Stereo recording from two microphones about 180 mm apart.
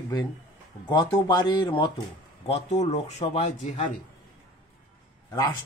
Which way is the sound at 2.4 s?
35° left (ahead or behind).